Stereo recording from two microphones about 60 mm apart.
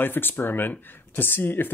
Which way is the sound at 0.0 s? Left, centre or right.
Left.